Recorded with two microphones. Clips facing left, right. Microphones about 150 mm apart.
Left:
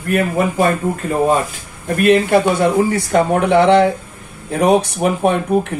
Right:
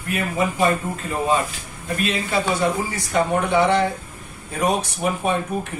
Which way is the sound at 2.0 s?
60° left (ahead or behind).